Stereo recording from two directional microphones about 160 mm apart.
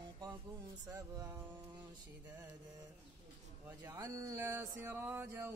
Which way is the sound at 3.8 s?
15° right (ahead or behind).